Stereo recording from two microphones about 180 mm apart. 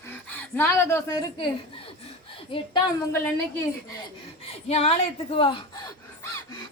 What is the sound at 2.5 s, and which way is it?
Speech, 30° left (ahead or behind).